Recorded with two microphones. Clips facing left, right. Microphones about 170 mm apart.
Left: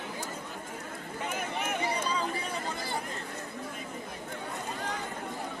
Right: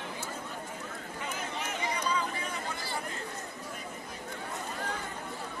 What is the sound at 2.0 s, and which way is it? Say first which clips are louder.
Chatter: even; 30° left (ahead or behind).